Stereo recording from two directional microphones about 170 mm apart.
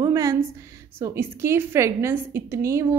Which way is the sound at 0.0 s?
20° right (ahead or behind).